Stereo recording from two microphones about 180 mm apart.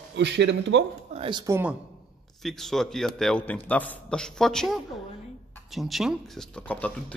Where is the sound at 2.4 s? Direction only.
Centre (ahead or behind).